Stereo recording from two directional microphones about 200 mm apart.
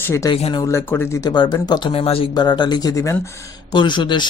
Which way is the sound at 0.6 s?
10° left (ahead or behind).